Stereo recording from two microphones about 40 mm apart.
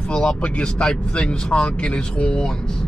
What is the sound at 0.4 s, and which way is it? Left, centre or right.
Speech, left.